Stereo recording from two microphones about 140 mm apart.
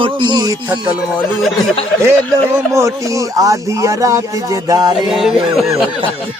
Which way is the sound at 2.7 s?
20° right (ahead or behind).